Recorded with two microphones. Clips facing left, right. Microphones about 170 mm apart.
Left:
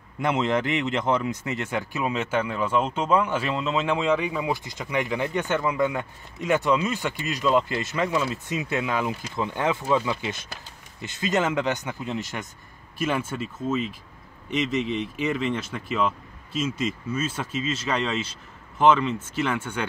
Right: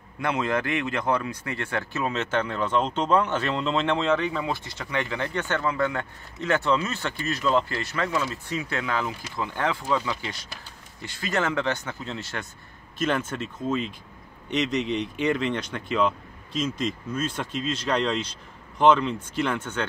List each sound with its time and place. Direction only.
0.2 s speech: 20° left (ahead or behind)